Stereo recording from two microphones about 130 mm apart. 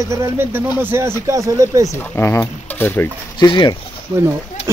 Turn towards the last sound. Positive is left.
turn(degrees=-35)  # may be behind; listen again after turning